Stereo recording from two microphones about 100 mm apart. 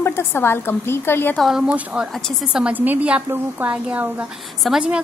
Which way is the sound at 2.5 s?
15° right (ahead or behind).